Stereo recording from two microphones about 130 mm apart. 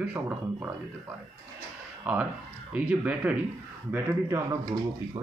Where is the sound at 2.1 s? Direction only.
10° right (ahead or behind).